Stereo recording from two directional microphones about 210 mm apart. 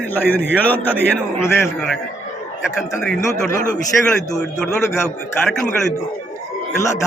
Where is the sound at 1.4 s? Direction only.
5° left (ahead or behind).